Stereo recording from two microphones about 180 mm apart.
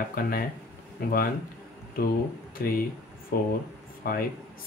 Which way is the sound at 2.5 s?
55° left (ahead or behind).